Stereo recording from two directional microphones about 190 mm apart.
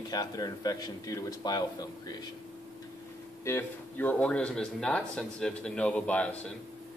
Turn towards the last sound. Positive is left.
turn(degrees=5)  # may be behind; listen again after turning